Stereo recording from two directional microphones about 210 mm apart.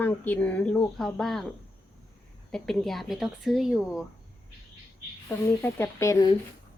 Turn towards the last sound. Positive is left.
turn(degrees=15)  # may be behind; listen again after turning